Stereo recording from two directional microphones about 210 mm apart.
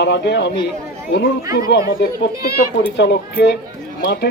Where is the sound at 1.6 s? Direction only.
50° left (ahead or behind).